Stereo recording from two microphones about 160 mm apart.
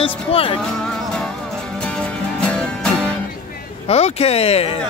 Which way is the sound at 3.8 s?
40° left (ahead or behind).